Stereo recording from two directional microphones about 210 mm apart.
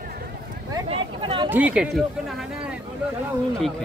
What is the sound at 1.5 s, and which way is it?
Speech, 5° right (ahead or behind).